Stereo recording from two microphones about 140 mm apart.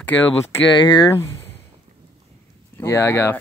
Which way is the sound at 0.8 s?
30° left (ahead or behind).